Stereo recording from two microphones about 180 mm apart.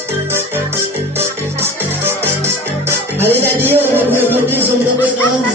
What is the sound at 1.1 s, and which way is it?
Music, 15° right (ahead or behind).